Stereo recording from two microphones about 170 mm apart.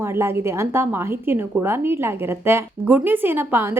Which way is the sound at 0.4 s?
15° right (ahead or behind).